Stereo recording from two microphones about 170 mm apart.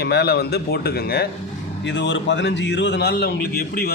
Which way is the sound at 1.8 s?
90° left.